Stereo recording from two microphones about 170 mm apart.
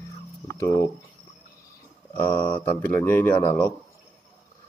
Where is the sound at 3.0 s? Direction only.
10° left (ahead or behind).